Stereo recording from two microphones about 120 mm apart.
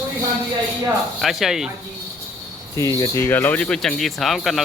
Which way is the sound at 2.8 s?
30° left (ahead or behind).